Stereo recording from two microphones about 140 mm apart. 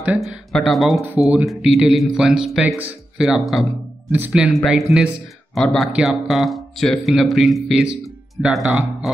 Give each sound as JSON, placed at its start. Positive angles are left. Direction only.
{"t": 0.0, "sound": "speech", "side_deg": -10}